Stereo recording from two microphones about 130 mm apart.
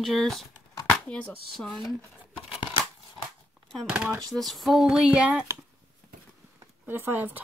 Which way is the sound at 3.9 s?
10° right (ahead or behind).